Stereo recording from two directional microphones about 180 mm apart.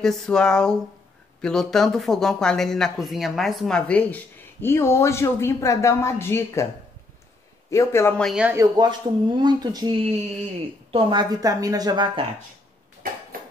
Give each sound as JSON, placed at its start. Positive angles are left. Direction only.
{"t": 0.0, "sound": "speech", "side_deg": 5}
{"t": 7.7, "sound": "speech", "side_deg": 15}
{"t": 8.2, "sound": "speech", "side_deg": -5}
{"t": 8.5, "sound": "a woman's voice", "side_deg": -25}